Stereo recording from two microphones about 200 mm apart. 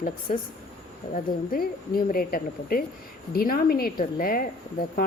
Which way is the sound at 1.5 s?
45° left (ahead or behind).